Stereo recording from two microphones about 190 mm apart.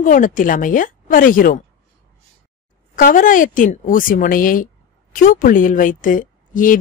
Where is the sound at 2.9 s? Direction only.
45° left (ahead or behind).